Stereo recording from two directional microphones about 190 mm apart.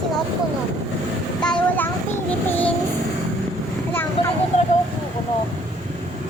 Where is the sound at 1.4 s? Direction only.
5° left (ahead or behind).